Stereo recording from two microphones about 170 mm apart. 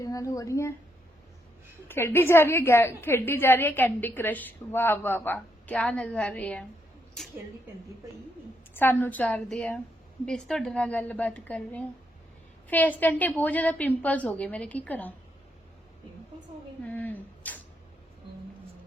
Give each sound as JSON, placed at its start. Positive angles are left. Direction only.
{"t": 0.0, "sound": "speech", "side_deg": 20}
{"t": 1.9, "sound": "a woman's voice", "side_deg": 15}
{"t": 8.7, "sound": "a woman's voice", "side_deg": 10}
{"t": 16.8, "sound": "speech", "side_deg": 10}